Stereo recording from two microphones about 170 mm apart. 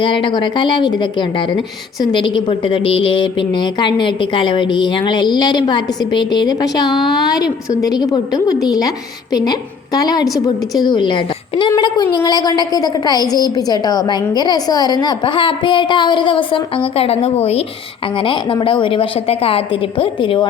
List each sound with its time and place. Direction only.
0.0 s a woman's voice: 30° left (ahead or behind)